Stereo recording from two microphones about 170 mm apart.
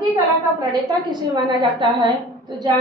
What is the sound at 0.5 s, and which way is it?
A woman's voice, 25° right (ahead or behind).